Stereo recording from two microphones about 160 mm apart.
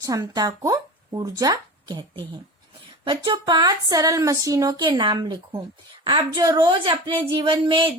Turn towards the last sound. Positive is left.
turn(degrees=-30)  # may be behind; listen again after turning